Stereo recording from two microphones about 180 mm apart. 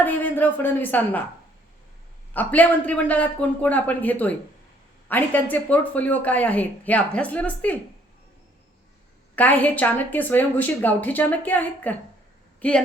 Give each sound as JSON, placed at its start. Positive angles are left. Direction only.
{"t": 0.0, "sound": "speech", "side_deg": 10}
{"t": 2.3, "sound": "speech", "side_deg": 10}
{"t": 9.3, "sound": "speech", "side_deg": 10}
{"t": 12.5, "sound": "a sound", "side_deg": 5}